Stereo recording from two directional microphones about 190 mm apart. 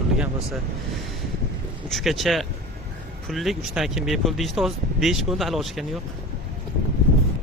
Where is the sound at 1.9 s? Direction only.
Centre (ahead or behind).